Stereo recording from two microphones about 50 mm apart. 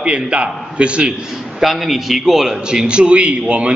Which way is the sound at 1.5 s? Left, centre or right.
Centre.